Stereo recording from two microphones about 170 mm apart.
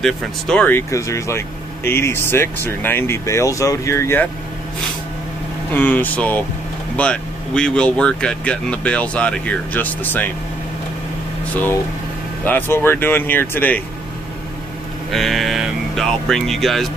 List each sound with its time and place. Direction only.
0.0 s speech: 5° left (ahead or behind)
5.7 s speech: 10° left (ahead or behind)
12.4 s speech: 10° left (ahead or behind)
15.0 s speech: centre (ahead or behind)